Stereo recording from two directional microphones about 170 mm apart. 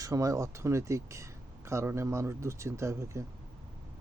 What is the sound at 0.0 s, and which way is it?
Speech, 20° right (ahead or behind).